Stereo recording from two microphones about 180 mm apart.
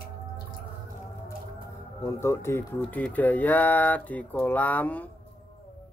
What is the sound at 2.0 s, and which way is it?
Speech, 15° left (ahead or behind).